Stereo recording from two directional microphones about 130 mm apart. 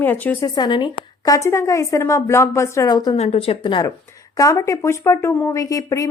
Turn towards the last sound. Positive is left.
turn(degrees=25)  # may be behind; listen again after turning